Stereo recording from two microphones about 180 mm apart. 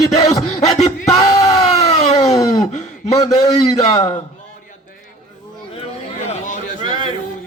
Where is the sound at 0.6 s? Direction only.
35° left (ahead or behind).